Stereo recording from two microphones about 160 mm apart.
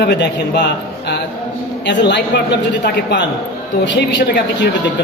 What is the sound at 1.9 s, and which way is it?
A woman's voice, 90° left.